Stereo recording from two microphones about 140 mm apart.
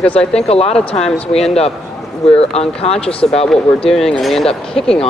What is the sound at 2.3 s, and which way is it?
Speech, 45° left (ahead or behind).